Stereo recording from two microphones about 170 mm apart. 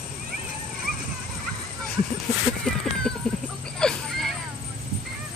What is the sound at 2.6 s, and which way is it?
Cat, 5° left (ahead or behind).